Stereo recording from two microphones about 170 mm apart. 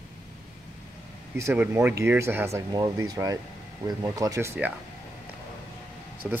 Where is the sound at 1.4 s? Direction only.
15° right (ahead or behind).